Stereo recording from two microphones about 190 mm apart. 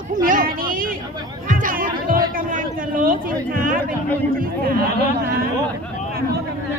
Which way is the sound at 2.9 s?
45° right (ahead or behind).